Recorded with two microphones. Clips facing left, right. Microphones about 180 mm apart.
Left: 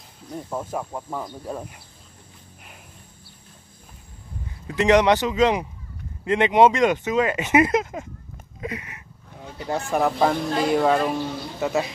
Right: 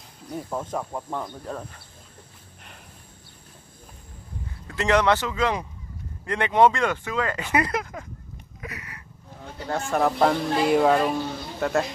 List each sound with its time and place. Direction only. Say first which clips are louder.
0.3 s speech: even; centre (ahead or behind)
4.6 s speech: left 4 dB; 15° left (ahead or behind)
8.5 s a sound: left 7 dB; 25° left (ahead or behind)
9.8 s speech: even; centre (ahead or behind)